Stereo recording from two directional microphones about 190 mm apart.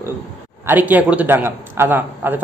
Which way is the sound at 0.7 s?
10° right (ahead or behind).